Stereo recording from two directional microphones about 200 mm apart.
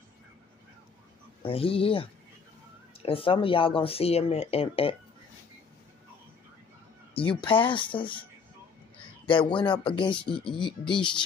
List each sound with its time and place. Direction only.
1.4 s speech: 30° left (ahead or behind)
3.1 s speech: 25° left (ahead or behind)
7.2 s speech: 25° left (ahead or behind)